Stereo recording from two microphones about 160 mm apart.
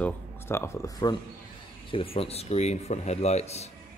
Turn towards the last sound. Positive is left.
turn(degrees=40)  # may be behind; listen again after turning